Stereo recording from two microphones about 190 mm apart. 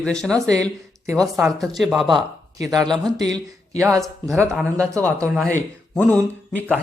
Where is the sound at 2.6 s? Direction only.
20° right (ahead or behind).